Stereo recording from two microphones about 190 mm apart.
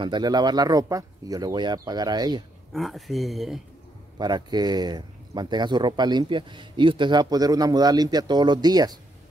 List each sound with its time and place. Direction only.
0.0 s speech: 20° right (ahead or behind)
2.7 s speech: centre (ahead or behind)
4.2 s speech: 20° right (ahead or behind)